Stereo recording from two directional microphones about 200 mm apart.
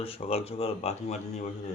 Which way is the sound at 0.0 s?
30° left (ahead or behind).